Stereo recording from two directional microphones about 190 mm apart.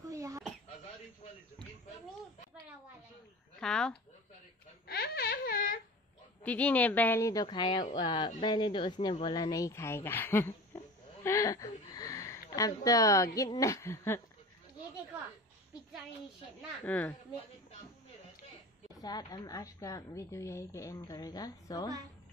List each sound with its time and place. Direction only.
0.0 s a sound: 15° right (ahead or behind)
3.5 s speech: 5° left (ahead or behind)
4.8 s a sound: 55° left (ahead or behind)
6.4 s a woman's voice: 5° left (ahead or behind)
16.8 s a woman's voice: 10° left (ahead or behind)
18.9 s a woman's voice: 20° left (ahead or behind)